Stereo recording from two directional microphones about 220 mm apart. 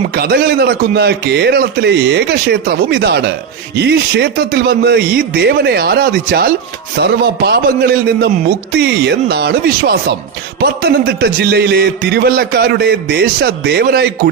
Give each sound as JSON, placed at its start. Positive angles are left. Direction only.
{"t": 0.1, "sound": "a man's voice", "side_deg": -45}